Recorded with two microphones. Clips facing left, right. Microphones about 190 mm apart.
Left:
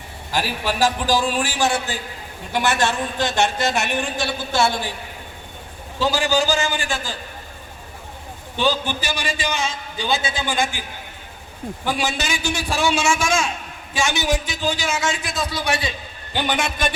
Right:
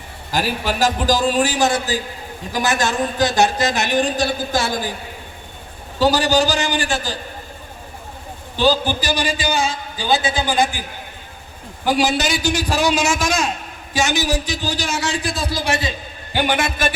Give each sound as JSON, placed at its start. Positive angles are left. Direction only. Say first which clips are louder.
{"t": 0.3, "sound": "a man's voice", "louder": "right 2 dB", "side_deg": -40}
{"t": 6.0, "sound": "a man's voice", "louder": "right 4 dB", "side_deg": -35}
{"t": 8.5, "sound": "a man's voice", "louder": "right 4 dB", "side_deg": -35}
{"t": 11.9, "sound": "a man's voice", "louder": "right 6 dB", "side_deg": -35}
{"t": 16.3, "sound": "a man's voice", "louder": "right 3 dB", "side_deg": -10}